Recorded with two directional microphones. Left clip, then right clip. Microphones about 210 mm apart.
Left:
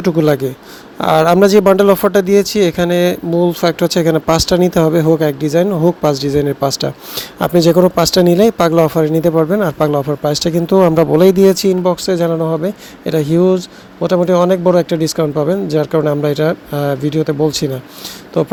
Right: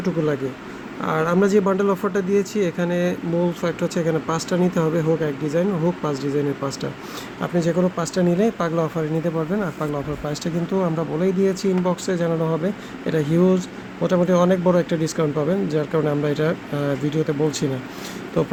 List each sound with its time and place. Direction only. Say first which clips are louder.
0.0 s speech: left 10 dB; 45° left (ahead or behind)